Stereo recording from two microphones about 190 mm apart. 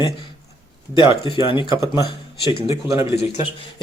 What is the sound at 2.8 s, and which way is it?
Speech, 15° right (ahead or behind).